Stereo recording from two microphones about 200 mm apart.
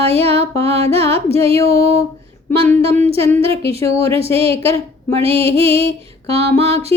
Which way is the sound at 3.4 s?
30° right (ahead or behind).